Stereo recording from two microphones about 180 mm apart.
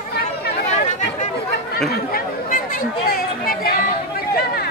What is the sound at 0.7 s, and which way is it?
Chatter, 40° left (ahead or behind).